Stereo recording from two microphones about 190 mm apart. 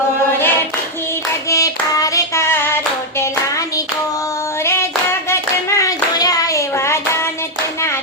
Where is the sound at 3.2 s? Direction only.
15° left (ahead or behind).